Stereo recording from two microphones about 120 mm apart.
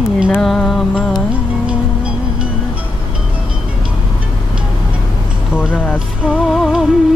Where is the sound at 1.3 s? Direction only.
10° right (ahead or behind).